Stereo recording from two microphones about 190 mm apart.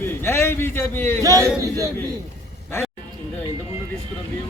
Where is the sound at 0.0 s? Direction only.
15° left (ahead or behind).